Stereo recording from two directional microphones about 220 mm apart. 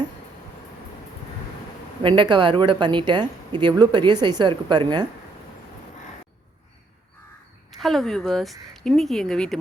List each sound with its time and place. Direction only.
2.0 s speech: 20° right (ahead or behind)
7.8 s speech: centre (ahead or behind)